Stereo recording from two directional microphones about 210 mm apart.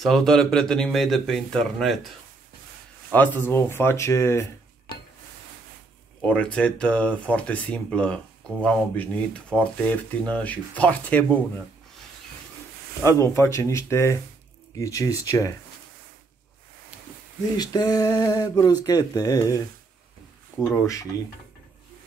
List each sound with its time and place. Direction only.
0.0 s speech: centre (ahead or behind)
3.1 s speech: 10° left (ahead or behind)
6.2 s speech: 5° left (ahead or behind)
13.0 s speech: 15° left (ahead or behind)
17.6 s a sound: 20° left (ahead or behind)
18.9 s speech: 15° left (ahead or behind)